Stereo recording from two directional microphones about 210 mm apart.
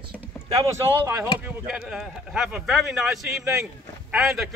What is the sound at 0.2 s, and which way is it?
Speech, 15° right (ahead or behind).